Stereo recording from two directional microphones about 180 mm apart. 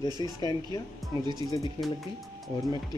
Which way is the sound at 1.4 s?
25° right (ahead or behind).